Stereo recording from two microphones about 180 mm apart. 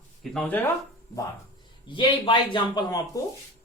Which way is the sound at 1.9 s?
25° left (ahead or behind).